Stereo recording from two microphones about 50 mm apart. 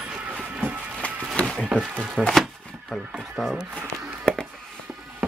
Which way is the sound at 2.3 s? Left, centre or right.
Centre.